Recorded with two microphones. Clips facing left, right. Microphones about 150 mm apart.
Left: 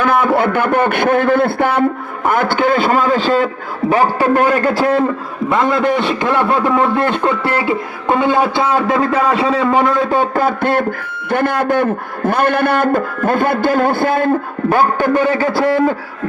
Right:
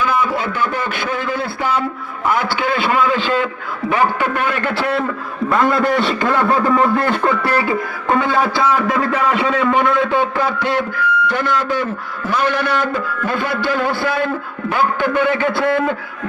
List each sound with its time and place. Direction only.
0.0 s a man's voice: 60° left (ahead or behind); by 5.0 s 35° left (ahead or behind)
5.5 s a man's voice: 20° left (ahead or behind); by 16.0 s 40° left (ahead or behind)